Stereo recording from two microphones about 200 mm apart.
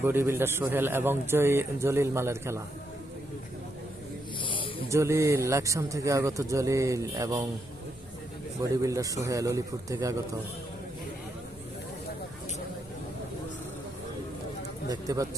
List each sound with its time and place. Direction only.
0.0 s a man's voice: 10° right (ahead or behind)
4.4 s snake: 25° left (ahead or behind)
4.9 s a man's voice: 15° right (ahead or behind)
8.6 s a man's voice: 15° right (ahead or behind)
14.8 s a man's voice: 15° right (ahead or behind)